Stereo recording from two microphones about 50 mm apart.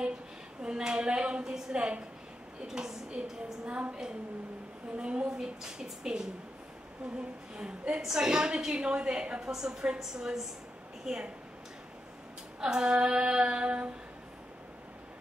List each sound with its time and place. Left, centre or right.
0.6 s a woman's voice: centre
12.5 s a woman's voice: centre